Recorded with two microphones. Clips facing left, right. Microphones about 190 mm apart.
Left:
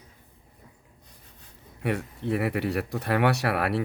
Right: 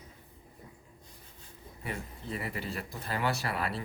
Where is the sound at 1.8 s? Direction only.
70° left (ahead or behind).